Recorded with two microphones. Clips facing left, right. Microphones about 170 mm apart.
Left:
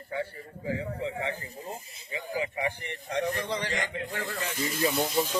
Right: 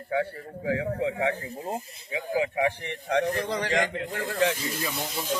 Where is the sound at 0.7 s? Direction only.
75° right (ahead or behind).